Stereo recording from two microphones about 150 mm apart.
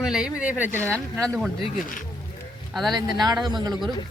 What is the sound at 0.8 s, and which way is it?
Speech, 10° left (ahead or behind).